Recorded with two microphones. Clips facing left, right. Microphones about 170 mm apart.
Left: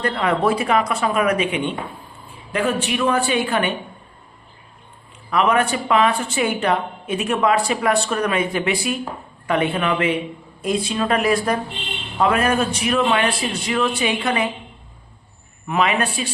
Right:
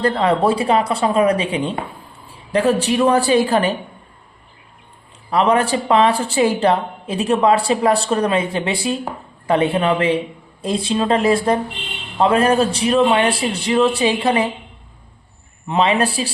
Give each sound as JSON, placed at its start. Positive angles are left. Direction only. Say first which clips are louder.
{"t": 0.0, "sound": "a woman's voice", "louder": "right 3 dB", "side_deg": -30}
{"t": 5.3, "sound": "a woman's voice", "louder": "right 2 dB", "side_deg": -30}
{"t": 15.6, "sound": "a woman's voice", "louder": "right 3 dB", "side_deg": -30}